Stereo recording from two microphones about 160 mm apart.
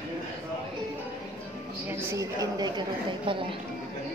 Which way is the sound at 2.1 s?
20° right (ahead or behind).